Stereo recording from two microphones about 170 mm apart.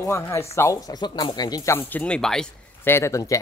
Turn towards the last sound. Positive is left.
turn(degrees=20)  # may be behind; listen again after turning